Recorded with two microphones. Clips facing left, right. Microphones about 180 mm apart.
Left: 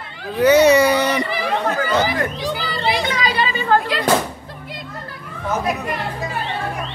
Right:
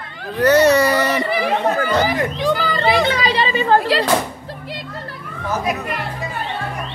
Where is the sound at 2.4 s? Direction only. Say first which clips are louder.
Right 5 dB; 50° right (ahead or behind).